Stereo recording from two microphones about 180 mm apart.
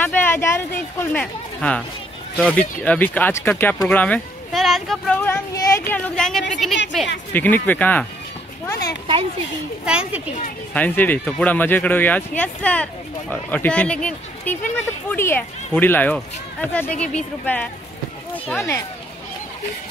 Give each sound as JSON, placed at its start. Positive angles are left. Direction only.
{"t": 0.0, "sound": "speech", "side_deg": 10}
{"t": 9.8, "sound": "speech", "side_deg": -5}
{"t": 10.7, "sound": "speech", "side_deg": 10}